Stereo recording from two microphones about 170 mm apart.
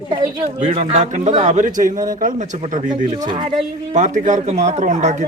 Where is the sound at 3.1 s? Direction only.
25° right (ahead or behind).